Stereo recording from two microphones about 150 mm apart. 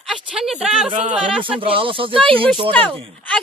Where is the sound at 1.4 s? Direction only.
35° right (ahead or behind).